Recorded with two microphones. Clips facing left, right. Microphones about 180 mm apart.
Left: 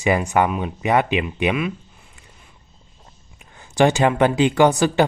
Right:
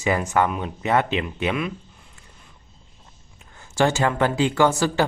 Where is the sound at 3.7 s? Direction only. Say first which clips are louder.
Left 4 dB; 15° left (ahead or behind).